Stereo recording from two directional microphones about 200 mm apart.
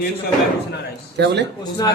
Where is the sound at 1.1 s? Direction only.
60° right (ahead or behind).